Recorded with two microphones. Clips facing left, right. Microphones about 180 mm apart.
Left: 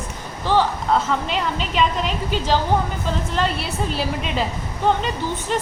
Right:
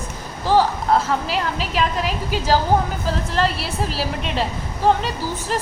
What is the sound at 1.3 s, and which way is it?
A woman's voice, 5° right (ahead or behind).